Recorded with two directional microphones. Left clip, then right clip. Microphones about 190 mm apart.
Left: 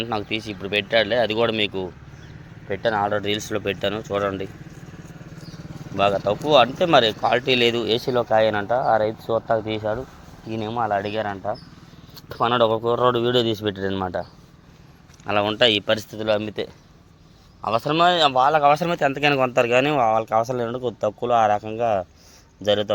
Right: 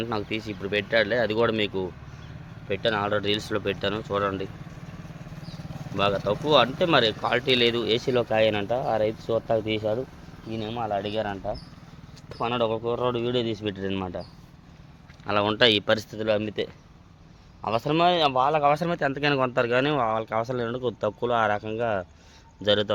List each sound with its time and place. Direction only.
0.0 s a man's voice: centre (ahead or behind)
6.0 s a man's voice: centre (ahead or behind)
8.2 s a man's voice: 10° right (ahead or behind)
9.5 s speech: 10° right (ahead or behind)
10.5 s speech: 15° left (ahead or behind)
12.3 s speech: 25° left (ahead or behind); by 14.3 s 10° left (ahead or behind)
15.3 s a man's voice: 5° right (ahead or behind)